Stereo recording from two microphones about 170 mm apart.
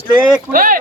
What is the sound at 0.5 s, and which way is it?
Speech, 55° right (ahead or behind).